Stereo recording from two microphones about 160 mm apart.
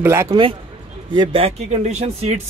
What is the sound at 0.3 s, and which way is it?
Speech, 35° right (ahead or behind).